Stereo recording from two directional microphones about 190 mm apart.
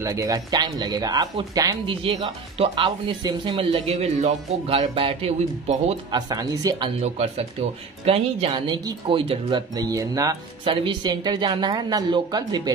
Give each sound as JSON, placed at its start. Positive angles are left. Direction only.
{"t": 0.0, "sound": "speech", "side_deg": -15}
{"t": 6.1, "sound": "speech", "side_deg": -20}
{"t": 7.0, "sound": "speech", "side_deg": -35}